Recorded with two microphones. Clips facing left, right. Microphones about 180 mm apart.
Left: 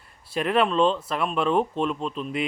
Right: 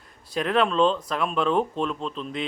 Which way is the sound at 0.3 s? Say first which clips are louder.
Even; 5° left (ahead or behind).